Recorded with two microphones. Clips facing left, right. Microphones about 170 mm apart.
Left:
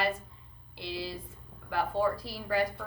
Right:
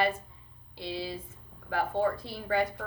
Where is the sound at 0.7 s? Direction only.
25° right (ahead or behind).